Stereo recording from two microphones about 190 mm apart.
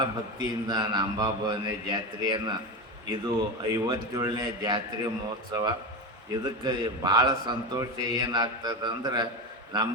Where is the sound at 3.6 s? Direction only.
20° right (ahead or behind).